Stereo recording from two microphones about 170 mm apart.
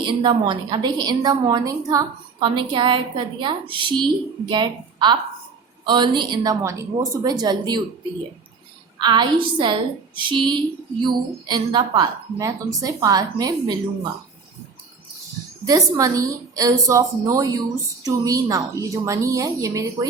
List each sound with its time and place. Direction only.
0.0 s a woman's voice: 25° right (ahead or behind)
9.0 s a woman's voice: 25° right (ahead or behind)
15.6 s a woman's voice: 20° right (ahead or behind)